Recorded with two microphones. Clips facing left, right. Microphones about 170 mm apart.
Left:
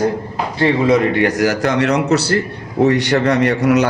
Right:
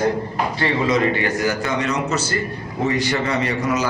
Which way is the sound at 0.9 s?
75° left (ahead or behind).